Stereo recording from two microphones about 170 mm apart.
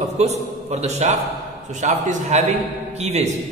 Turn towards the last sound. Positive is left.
turn(degrees=-40)  # may be behind; listen again after turning